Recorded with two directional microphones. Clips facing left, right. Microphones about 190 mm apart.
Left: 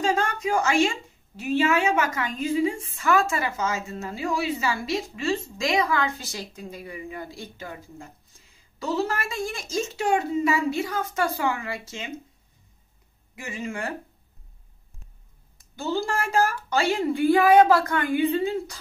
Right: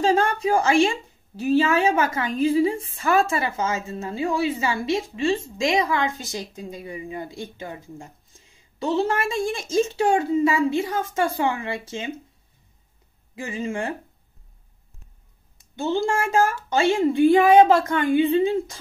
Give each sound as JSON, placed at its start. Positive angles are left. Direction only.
{"t": 0.0, "sound": "a woman's voice", "side_deg": -35}
{"t": 13.4, "sound": "a woman's voice", "side_deg": -30}
{"t": 15.7, "sound": "a woman's voice", "side_deg": -25}